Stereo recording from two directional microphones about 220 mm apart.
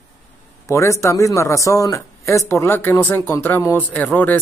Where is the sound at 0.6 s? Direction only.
15° left (ahead or behind).